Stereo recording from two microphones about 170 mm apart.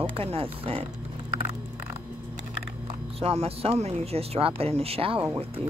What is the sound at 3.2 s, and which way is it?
Speech, 35° right (ahead or behind).